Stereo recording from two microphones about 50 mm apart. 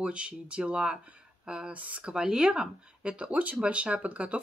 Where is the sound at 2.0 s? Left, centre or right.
Centre.